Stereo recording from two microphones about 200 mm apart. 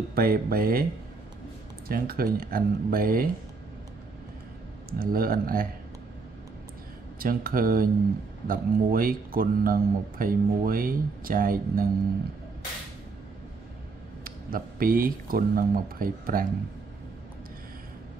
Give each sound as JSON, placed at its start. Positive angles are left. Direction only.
{"t": 0.1, "sound": "speech", "side_deg": -50}
{"t": 1.9, "sound": "speech", "side_deg": -45}
{"t": 4.9, "sound": "speech", "side_deg": -45}
{"t": 7.2, "sound": "speech", "side_deg": -45}
{"t": 14.2, "sound": "speech", "side_deg": -45}